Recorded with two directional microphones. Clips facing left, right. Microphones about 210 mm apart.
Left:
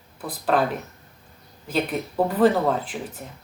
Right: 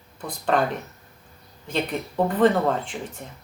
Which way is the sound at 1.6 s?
5° left (ahead or behind).